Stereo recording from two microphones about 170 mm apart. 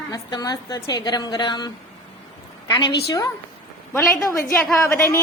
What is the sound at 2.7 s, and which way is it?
A woman's voice, 25° left (ahead or behind).